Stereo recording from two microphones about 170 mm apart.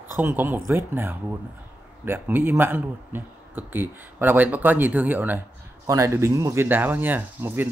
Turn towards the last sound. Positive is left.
turn(degrees=-10)  # may be behind; listen again after turning